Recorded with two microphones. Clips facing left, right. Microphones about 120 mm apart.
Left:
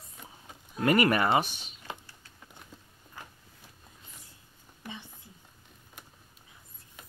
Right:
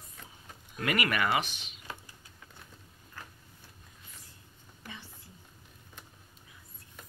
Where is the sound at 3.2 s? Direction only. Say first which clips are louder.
Left 1 dB; 15° left (ahead or behind).